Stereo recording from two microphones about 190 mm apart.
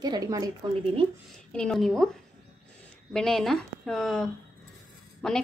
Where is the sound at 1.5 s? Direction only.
5° left (ahead or behind).